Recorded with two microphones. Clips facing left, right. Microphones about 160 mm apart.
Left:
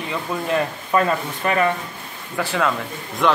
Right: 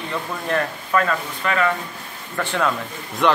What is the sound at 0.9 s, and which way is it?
Speech, 25° left (ahead or behind).